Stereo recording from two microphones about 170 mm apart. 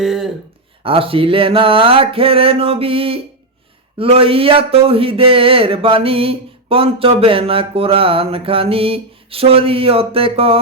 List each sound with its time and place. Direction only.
0.0 s speech: centre (ahead or behind)
0.8 s speech: 30° right (ahead or behind)